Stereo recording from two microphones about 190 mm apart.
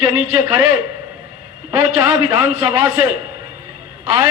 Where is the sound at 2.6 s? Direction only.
15° right (ahead or behind).